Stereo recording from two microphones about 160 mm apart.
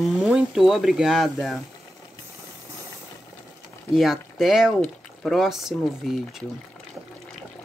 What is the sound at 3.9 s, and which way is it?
Speech, centre (ahead or behind).